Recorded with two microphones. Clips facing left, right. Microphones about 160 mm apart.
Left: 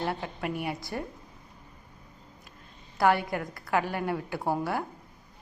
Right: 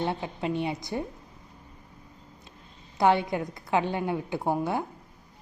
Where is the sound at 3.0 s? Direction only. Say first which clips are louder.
Right 2 dB; 20° right (ahead or behind).